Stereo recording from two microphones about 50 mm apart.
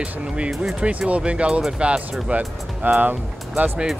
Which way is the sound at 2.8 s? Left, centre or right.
Right.